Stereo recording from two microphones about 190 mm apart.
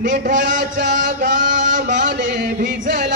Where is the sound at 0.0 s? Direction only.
45° right (ahead or behind).